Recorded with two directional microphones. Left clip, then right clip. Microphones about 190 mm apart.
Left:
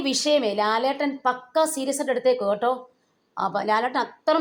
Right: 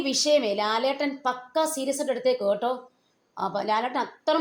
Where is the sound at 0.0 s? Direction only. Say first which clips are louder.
Left 1 dB; 20° left (ahead or behind).